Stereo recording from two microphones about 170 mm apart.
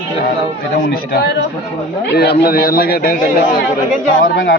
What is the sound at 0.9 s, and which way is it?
Speech, 75° left (ahead or behind).